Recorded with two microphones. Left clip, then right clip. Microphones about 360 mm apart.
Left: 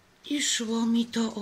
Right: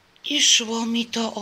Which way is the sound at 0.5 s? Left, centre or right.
Right.